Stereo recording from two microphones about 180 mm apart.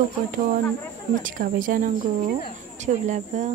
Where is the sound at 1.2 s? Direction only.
50° right (ahead or behind).